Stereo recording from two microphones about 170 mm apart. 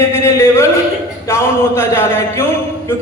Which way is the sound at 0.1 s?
15° left (ahead or behind).